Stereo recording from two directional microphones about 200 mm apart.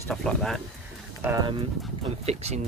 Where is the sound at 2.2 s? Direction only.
30° right (ahead or behind).